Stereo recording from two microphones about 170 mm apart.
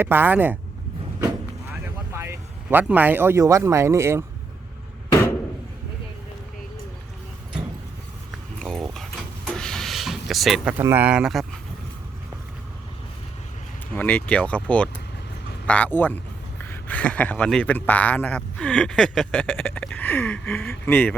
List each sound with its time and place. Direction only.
0.0 s speech: 10° right (ahead or behind)
1.8 s speech: 15° right (ahead or behind)
8.5 s dog: 5° left (ahead or behind)
9.6 s a sound: 5° left (ahead or behind)
10.8 s speech: 10° right (ahead or behind)
13.9 s a man's voice: 10° left (ahead or behind)